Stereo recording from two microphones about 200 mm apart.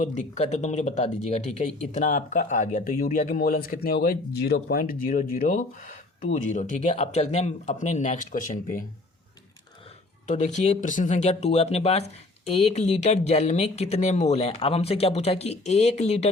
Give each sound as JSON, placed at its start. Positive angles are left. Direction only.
{"t": 0.0, "sound": "speech", "side_deg": 35}
{"t": 10.2, "sound": "speech", "side_deg": 35}